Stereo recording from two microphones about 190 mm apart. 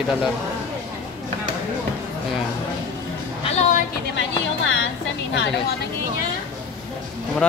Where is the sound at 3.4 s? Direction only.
35° left (ahead or behind).